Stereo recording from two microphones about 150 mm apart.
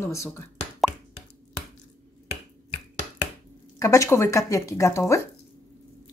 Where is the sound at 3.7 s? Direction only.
20° left (ahead or behind).